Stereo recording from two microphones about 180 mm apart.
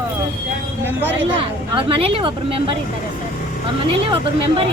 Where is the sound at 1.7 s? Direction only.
30° right (ahead or behind).